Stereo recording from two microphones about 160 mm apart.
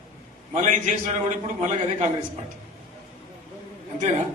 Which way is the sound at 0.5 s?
50° right (ahead or behind).